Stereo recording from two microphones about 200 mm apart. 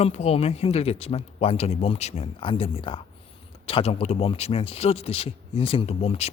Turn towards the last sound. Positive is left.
turn(degrees=30)  # may be behind; listen again after turning